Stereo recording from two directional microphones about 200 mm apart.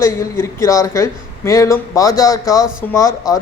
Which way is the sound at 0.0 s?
15° left (ahead or behind).